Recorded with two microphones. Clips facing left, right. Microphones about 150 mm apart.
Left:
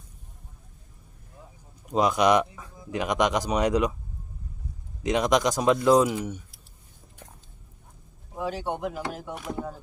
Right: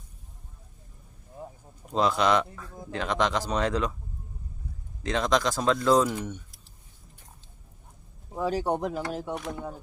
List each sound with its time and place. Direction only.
1.4 s a sound: 50° right (ahead or behind)
1.9 s speech: 15° left (ahead or behind)
5.0 s speech: 15° left (ahead or behind)
8.4 s speech: 40° right (ahead or behind)